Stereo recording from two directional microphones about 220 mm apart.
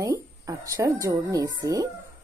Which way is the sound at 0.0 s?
15° right (ahead or behind).